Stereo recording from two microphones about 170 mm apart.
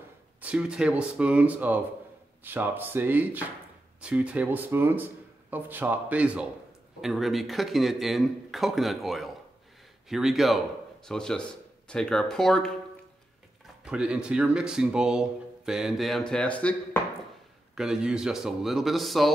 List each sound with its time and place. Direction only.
0.4 s speech: 5° right (ahead or behind)
13.8 s speech: 5° right (ahead or behind)
17.7 s speech: 5° right (ahead or behind)